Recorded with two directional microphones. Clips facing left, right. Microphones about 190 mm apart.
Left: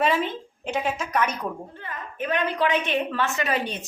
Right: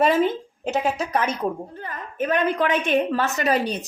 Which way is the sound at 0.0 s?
40° right (ahead or behind).